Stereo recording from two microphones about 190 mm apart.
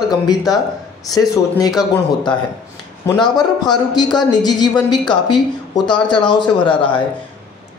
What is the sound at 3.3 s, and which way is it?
Speech, 20° left (ahead or behind).